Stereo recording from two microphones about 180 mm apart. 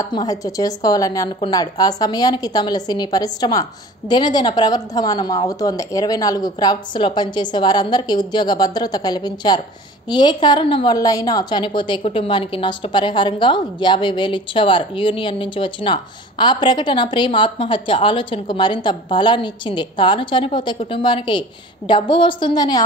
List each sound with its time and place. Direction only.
0.0 s a woman's voice: 20° left (ahead or behind)